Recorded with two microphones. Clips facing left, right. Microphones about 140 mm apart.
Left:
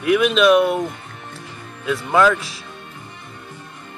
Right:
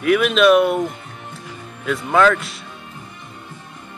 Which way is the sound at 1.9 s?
5° left (ahead or behind).